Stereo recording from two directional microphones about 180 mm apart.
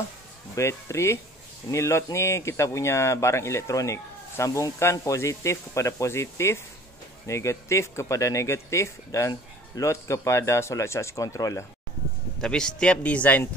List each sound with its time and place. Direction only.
0.6 s speech: 15° left (ahead or behind)
12.4 s a man's voice: 5° left (ahead or behind)